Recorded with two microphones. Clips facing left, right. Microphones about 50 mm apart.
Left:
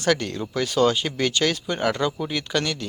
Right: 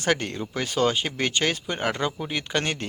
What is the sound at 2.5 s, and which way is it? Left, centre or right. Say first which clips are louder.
Speech: even; right.